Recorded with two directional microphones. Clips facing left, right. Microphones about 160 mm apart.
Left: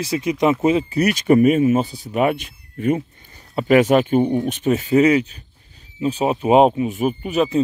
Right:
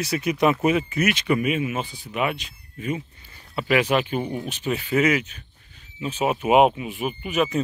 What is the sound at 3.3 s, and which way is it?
Speech, 45° left (ahead or behind).